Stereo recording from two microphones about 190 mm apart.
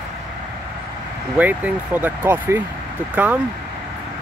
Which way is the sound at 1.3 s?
10° right (ahead or behind).